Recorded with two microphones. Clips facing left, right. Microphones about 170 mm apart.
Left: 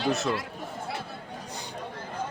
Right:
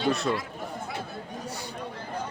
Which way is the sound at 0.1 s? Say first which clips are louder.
Right 1 dB; 5° left (ahead or behind).